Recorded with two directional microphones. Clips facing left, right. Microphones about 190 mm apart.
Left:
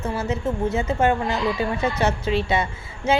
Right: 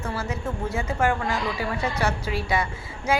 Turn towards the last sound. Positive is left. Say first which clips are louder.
# left 3 dB
turn(degrees=25)  # may be behind; listen again after turning